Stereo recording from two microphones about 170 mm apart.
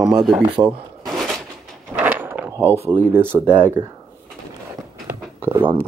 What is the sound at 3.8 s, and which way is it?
Speech, 25° right (ahead or behind).